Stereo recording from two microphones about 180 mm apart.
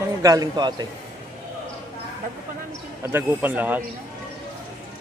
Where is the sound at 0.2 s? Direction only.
20° right (ahead or behind).